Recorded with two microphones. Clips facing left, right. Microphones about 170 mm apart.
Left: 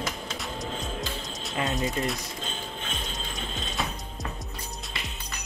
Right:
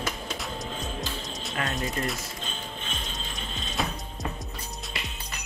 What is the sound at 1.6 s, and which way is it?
Speech, 20° left (ahead or behind).